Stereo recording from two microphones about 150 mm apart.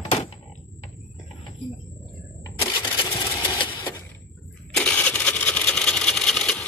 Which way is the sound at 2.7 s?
30° left (ahead or behind).